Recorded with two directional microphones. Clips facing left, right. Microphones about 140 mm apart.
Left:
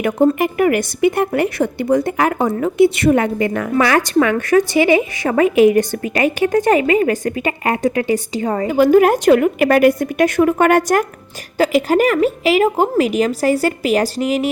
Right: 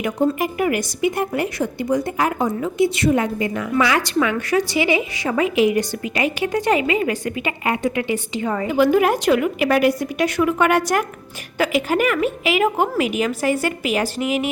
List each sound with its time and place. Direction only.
0.0 s a woman's voice: 60° left (ahead or behind)
11.5 s a woman's voice: 35° left (ahead or behind)